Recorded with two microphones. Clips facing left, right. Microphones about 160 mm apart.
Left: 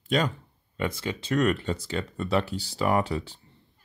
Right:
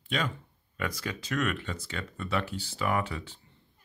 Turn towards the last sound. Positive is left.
turn(degrees=35)  # may be behind; listen again after turning